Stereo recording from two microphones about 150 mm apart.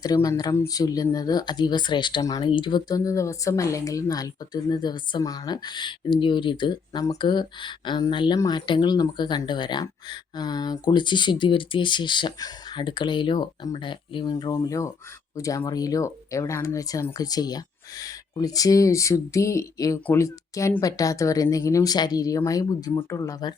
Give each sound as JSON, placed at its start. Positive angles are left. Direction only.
{"t": 0.0, "sound": "speech", "side_deg": 25}